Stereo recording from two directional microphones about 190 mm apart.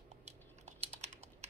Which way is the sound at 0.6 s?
35° right (ahead or behind).